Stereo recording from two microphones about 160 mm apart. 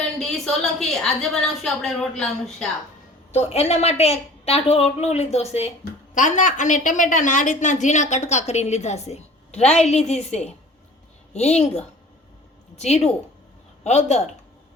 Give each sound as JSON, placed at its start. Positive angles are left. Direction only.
{"t": 0.2, "sound": "a woman's voice", "side_deg": 5}
{"t": 3.3, "sound": "a woman's voice", "side_deg": 40}
{"t": 6.1, "sound": "a woman's voice", "side_deg": 50}